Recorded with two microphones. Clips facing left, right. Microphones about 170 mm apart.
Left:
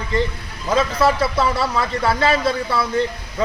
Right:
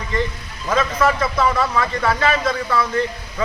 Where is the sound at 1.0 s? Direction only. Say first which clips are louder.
Right 1 dB; 35° left (ahead or behind).